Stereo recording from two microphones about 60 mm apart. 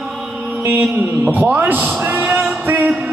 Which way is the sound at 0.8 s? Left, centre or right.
Right.